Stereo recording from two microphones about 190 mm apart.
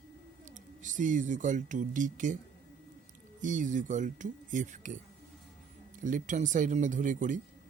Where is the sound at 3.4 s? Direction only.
40° right (ahead or behind).